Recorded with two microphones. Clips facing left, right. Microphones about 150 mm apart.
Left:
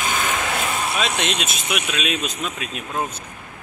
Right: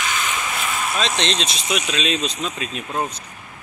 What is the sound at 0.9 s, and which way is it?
Speech, 5° left (ahead or behind).